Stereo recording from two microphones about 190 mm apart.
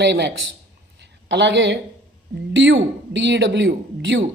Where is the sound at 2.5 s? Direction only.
85° right.